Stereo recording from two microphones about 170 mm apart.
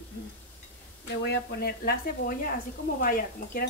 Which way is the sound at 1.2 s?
70° left (ahead or behind).